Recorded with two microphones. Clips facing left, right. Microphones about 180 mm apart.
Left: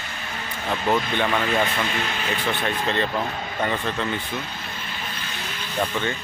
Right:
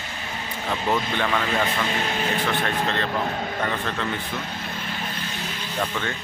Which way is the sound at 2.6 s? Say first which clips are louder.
Left 1 dB; 5° left (ahead or behind).